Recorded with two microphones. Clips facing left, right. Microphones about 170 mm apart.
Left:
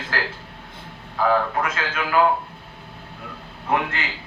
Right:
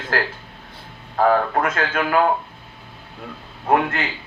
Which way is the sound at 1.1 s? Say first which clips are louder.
Right 3 dB; 50° right (ahead or behind).